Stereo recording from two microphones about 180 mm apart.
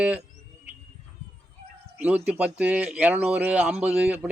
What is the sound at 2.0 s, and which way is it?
Speech, 10° right (ahead or behind).